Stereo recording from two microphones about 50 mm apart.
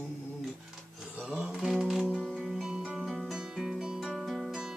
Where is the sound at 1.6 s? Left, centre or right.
Centre.